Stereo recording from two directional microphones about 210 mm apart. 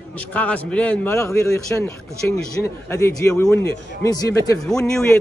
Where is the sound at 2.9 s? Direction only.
15° left (ahead or behind).